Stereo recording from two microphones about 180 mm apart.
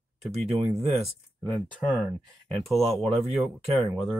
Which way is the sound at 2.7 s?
Centre (ahead or behind).